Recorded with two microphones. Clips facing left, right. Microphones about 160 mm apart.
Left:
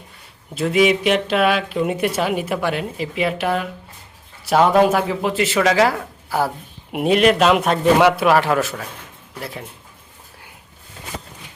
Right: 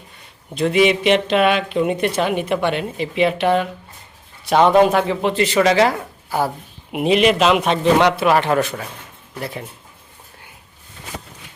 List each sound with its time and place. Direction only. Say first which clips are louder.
0.5 s speech: right 1 dB; 5° left (ahead or behind)